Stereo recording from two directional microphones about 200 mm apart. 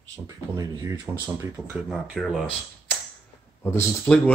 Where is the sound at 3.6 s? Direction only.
10° left (ahead or behind).